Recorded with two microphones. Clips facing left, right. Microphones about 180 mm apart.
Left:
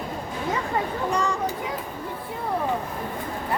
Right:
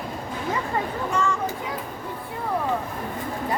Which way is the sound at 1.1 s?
35° left (ahead or behind).